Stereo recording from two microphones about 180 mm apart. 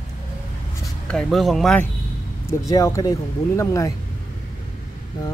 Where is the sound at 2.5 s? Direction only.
20° left (ahead or behind).